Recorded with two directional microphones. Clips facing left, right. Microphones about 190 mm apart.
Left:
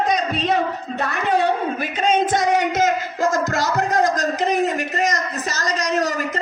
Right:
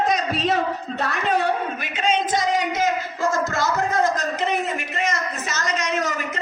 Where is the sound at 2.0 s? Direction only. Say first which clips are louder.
Left 3 dB; 50° left (ahead or behind).